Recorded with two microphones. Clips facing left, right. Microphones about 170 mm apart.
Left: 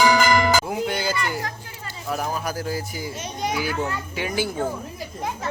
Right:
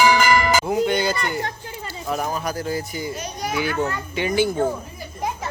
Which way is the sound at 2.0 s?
Centre (ahead or behind).